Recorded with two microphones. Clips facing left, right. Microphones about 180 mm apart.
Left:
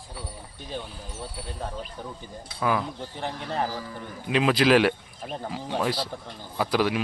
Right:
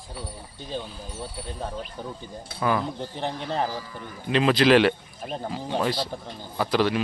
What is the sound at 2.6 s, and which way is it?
Speech, centre (ahead or behind).